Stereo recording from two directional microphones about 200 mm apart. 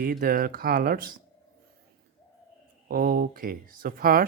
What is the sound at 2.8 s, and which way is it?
Speech, 50° right (ahead or behind).